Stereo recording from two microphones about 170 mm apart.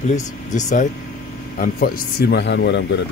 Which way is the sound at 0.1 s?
45° left (ahead or behind).